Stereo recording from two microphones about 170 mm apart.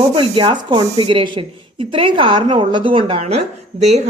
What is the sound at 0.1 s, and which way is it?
Speech, 30° right (ahead or behind).